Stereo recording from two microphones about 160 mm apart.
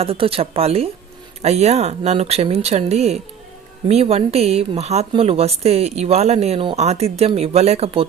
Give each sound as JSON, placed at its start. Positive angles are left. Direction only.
{"t": 0.0, "sound": "a woman's voice", "side_deg": -35}